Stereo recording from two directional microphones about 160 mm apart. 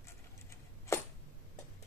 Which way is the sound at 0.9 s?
15° left (ahead or behind).